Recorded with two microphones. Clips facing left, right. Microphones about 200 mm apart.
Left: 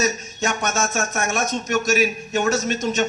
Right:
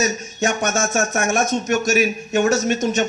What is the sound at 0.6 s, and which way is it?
Speech, 45° right (ahead or behind).